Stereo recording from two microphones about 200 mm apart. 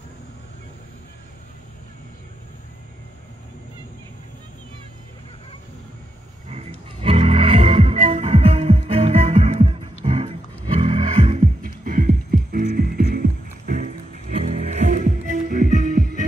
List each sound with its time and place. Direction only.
6.5 s music: 30° right (ahead or behind)